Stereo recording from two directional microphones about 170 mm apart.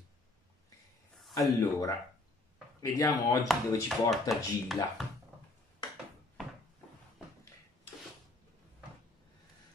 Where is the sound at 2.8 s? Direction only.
20° left (ahead or behind).